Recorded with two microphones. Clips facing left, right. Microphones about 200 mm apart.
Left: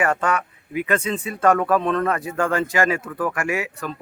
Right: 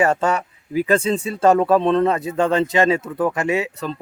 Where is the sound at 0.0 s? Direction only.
25° right (ahead or behind).